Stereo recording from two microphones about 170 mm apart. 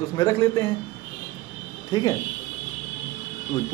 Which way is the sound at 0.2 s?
15° left (ahead or behind).